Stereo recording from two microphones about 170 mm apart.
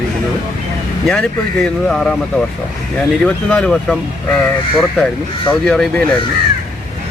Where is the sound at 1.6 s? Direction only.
5° left (ahead or behind).